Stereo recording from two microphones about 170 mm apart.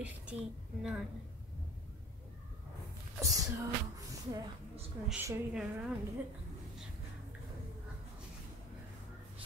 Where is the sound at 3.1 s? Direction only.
20° right (ahead or behind).